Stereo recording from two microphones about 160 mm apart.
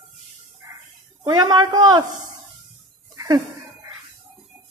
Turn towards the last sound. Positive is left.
turn(degrees=-25)  # may be behind; listen again after turning